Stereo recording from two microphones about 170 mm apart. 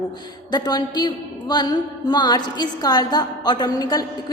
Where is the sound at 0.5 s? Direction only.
25° left (ahead or behind).